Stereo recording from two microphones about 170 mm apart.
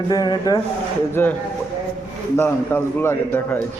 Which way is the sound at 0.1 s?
25° left (ahead or behind).